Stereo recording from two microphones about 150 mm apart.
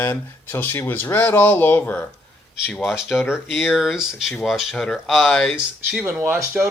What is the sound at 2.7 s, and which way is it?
Speech, centre (ahead or behind).